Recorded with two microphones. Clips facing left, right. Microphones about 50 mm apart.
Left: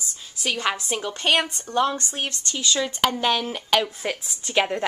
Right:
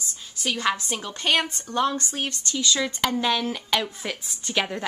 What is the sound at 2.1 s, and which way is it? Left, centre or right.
Speech, left.